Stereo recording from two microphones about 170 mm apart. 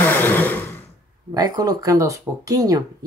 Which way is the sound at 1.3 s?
25° right (ahead or behind).